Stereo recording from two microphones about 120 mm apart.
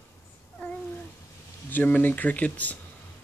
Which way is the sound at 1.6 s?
15° left (ahead or behind).